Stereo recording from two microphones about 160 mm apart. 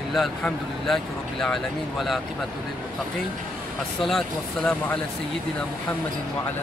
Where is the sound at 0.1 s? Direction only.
Centre (ahead or behind).